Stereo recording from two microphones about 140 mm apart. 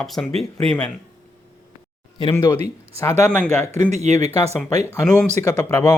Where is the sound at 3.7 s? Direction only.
50° right (ahead or behind).